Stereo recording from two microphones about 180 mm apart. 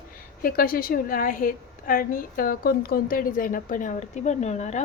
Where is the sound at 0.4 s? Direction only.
55° left (ahead or behind).